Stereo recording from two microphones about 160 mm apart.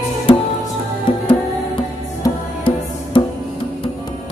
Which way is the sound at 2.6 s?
35° left (ahead or behind).